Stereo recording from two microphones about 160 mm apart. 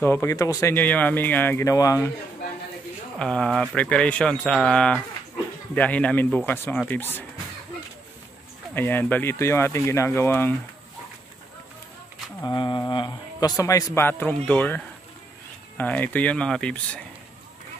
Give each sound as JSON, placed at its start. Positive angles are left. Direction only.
{"t": 0.0, "sound": "speech", "side_deg": 15}
{"t": 3.2, "sound": "speech", "side_deg": 5}
{"t": 8.7, "sound": "speech", "side_deg": 15}
{"t": 12.4, "sound": "a man's voice", "side_deg": 25}
{"t": 15.8, "sound": "speech", "side_deg": 10}